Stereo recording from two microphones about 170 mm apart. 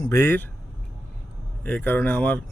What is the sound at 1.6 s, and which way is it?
Speech, 10° left (ahead or behind).